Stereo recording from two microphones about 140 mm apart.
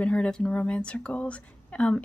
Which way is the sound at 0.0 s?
10° left (ahead or behind).